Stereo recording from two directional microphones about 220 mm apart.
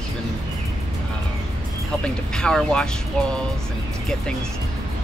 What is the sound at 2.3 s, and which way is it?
Speech, 5° left (ahead or behind).